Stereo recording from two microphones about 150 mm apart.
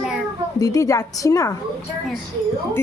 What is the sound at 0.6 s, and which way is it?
Speech, 20° left (ahead or behind).